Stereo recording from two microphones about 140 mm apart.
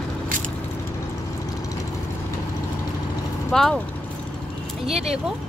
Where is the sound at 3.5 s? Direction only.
5° left (ahead or behind).